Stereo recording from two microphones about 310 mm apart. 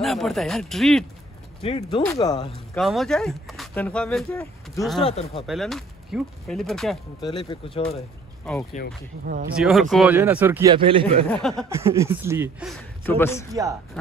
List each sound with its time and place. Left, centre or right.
0.0 s speech: centre
1.6 s speech: centre
2.8 s speech: centre
5.0 s speech: centre
5.5 s speech: centre
7.2 s speech: centre
8.5 s speech: centre
9.2 s speech: right
9.6 s speech: centre
11.2 s speech: centre
11.7 s speech: centre
13.0 s speech: centre
13.5 s speech: centre